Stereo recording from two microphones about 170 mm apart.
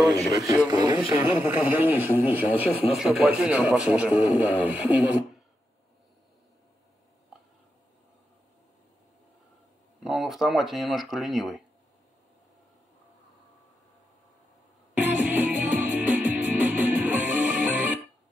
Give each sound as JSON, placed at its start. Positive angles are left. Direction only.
{"t": 0.7, "sound": "speech", "side_deg": -25}
{"t": 0.9, "sound": "speech", "side_deg": -10}
{"t": 2.7, "sound": "speech", "side_deg": 35}
{"t": 3.0, "sound": "speech", "side_deg": -5}
{"t": 10.0, "sound": "speech", "side_deg": 0}
{"t": 15.0, "sound": "music", "side_deg": -10}